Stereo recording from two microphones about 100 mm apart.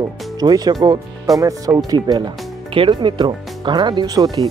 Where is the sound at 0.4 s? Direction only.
40° right (ahead or behind).